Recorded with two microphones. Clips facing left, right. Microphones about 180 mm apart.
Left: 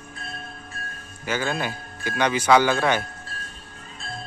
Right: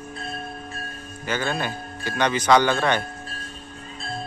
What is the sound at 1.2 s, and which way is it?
Speech, 10° left (ahead or behind).